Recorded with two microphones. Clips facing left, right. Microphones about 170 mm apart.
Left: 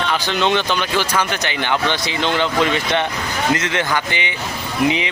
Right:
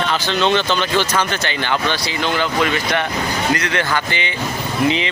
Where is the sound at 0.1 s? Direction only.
15° left (ahead or behind).